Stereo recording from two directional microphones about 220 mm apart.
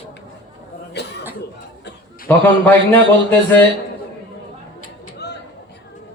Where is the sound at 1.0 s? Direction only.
50° left (ahead or behind).